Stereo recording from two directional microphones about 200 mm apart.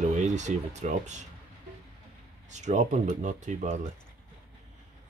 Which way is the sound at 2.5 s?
35° right (ahead or behind).